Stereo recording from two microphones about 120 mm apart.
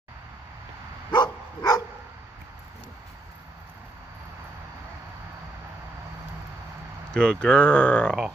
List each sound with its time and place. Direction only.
1.1 s dog: 35° left (ahead or behind)
7.1 s speech: 5° left (ahead or behind)